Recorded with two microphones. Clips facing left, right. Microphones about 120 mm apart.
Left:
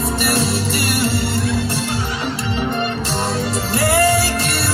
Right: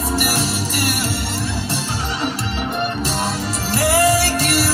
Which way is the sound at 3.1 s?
Centre (ahead or behind).